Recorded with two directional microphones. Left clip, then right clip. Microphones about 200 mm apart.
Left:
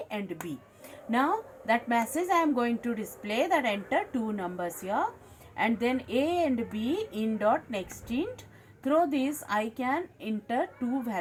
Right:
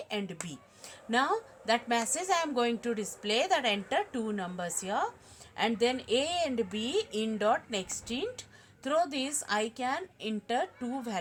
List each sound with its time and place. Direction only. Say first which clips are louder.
1.1 s a woman's voice: left 1 dB; 60° right (ahead or behind)